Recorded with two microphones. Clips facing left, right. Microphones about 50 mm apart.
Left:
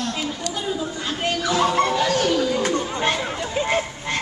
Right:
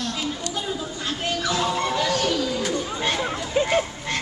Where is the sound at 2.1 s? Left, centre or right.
Centre.